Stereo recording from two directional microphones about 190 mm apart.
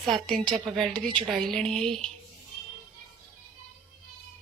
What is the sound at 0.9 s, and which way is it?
Speech, 25° right (ahead or behind).